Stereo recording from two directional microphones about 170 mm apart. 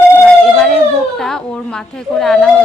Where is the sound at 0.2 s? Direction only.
5° left (ahead or behind).